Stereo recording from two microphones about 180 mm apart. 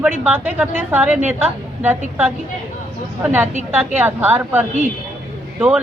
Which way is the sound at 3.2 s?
10° right (ahead or behind).